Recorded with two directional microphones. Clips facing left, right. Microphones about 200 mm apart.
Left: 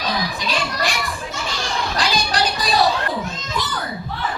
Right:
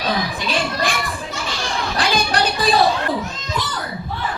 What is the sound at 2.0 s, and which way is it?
Music, 55° right (ahead or behind).